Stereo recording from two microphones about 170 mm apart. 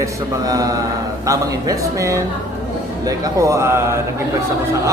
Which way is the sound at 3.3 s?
20° right (ahead or behind).